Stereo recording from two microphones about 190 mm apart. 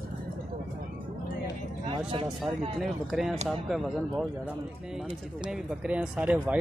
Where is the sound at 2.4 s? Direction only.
Centre (ahead or behind).